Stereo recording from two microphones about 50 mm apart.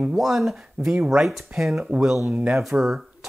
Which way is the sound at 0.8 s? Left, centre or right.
Right.